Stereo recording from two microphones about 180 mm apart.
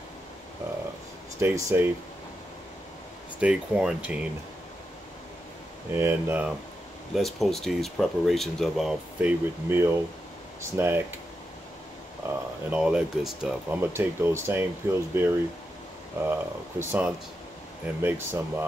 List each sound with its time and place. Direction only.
1.4 s speech: 15° right (ahead or behind)
3.3 s speech: 5° right (ahead or behind)
5.9 s speech: 10° right (ahead or behind)
7.2 s speech: centre (ahead or behind)
12.6 s speech: 5° right (ahead or behind)